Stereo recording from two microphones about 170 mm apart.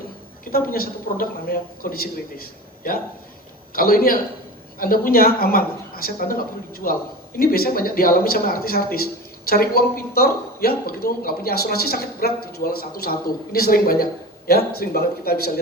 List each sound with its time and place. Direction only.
0.5 s speech: 60° left (ahead or behind)